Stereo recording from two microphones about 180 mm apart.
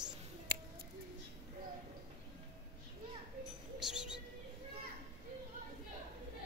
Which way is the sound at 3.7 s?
5° right (ahead or behind).